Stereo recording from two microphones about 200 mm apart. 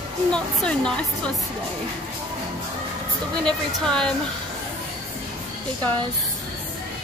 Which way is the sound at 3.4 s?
5° left (ahead or behind).